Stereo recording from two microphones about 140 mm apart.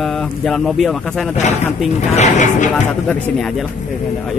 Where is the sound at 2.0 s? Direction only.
60° left (ahead or behind).